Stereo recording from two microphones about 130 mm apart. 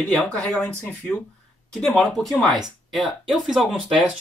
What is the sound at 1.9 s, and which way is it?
Speech, 5° left (ahead or behind).